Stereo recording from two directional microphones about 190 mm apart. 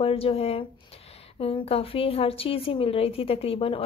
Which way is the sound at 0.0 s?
30° left (ahead or behind).